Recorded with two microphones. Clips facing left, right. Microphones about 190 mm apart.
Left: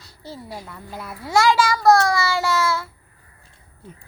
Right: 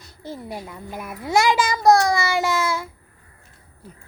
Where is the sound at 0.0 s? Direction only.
20° right (ahead or behind).